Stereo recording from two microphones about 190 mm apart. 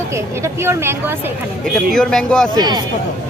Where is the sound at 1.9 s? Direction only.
5° left (ahead or behind).